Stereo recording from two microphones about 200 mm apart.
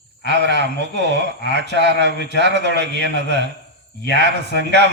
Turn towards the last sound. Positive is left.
turn(degrees=-60)  # may be behind; listen again after turning